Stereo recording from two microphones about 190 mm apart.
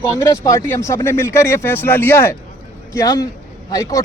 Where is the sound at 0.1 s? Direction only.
15° left (ahead or behind).